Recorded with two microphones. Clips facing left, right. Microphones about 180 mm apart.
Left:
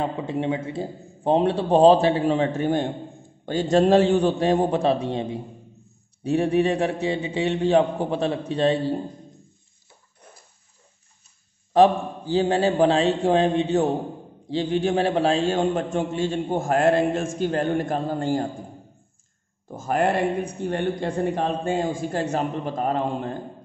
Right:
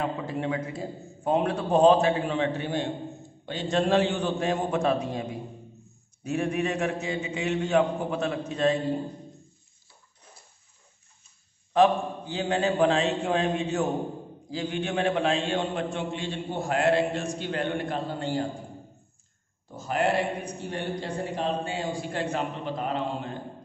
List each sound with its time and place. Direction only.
0.0 s a man's voice: 25° left (ahead or behind)
11.7 s a man's voice: 35° left (ahead or behind)
19.7 s a man's voice: 50° left (ahead or behind)